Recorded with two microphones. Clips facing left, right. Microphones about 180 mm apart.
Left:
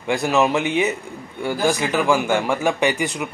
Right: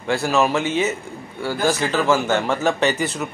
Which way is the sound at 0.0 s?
15° left (ahead or behind).